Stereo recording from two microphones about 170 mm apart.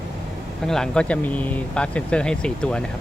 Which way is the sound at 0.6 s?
5° left (ahead or behind).